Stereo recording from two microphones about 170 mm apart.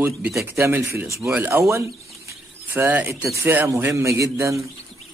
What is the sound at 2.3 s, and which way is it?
Speech, 10° right (ahead or behind).